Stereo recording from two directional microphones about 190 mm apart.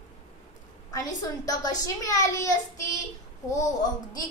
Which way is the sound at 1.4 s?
20° left (ahead or behind).